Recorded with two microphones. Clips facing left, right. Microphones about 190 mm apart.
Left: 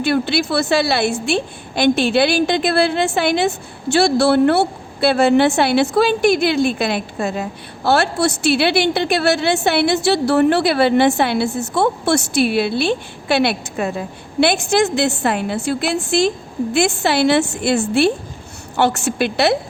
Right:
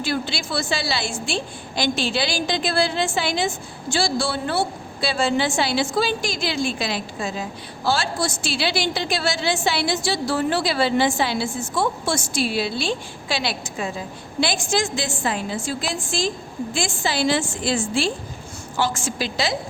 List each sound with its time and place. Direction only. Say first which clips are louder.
0.0 s a woman's voice: left 8 dB; 60° left (ahead or behind)